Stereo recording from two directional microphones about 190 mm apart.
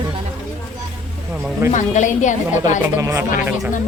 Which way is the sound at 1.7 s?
40° left (ahead or behind).